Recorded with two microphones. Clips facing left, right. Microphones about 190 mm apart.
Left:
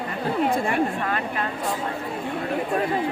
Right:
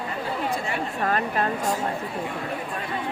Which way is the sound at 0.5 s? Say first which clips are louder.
Left 5 dB; 55° left (ahead or behind).